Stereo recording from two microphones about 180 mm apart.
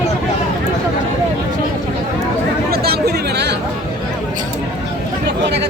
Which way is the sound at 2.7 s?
60° right (ahead or behind).